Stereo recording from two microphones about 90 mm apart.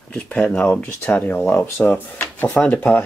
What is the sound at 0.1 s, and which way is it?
Speech, 10° left (ahead or behind).